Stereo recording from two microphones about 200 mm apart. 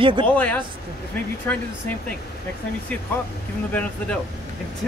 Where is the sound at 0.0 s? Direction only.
25° right (ahead or behind).